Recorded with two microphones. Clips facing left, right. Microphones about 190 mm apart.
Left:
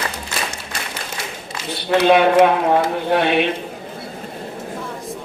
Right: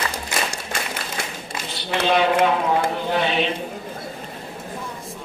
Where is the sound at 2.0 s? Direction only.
55° left (ahead or behind).